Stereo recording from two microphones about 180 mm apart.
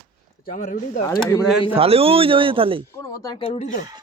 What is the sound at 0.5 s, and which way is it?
Speech, 45° left (ahead or behind).